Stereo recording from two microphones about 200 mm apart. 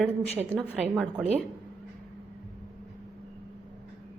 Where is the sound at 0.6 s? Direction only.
10° right (ahead or behind).